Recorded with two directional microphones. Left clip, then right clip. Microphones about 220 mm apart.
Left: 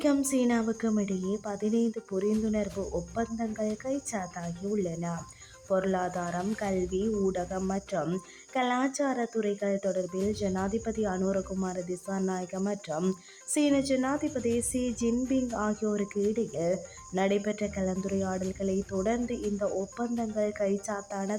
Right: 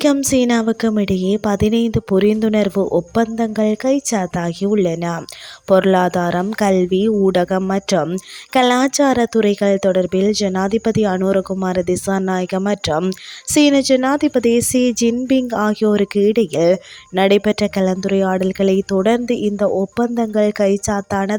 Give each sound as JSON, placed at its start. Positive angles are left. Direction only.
{"t": 0.0, "sound": "a woman's voice", "side_deg": -35}